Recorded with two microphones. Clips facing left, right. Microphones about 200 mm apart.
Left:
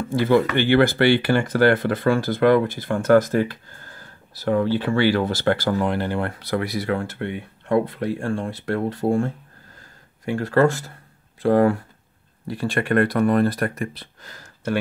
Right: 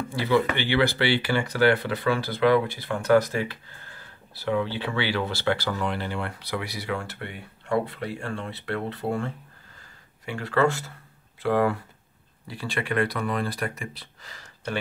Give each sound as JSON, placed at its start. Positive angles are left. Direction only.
{"t": 0.1, "sound": "speech", "side_deg": 50}